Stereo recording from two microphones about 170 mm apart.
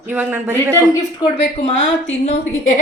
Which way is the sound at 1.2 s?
35° left (ahead or behind).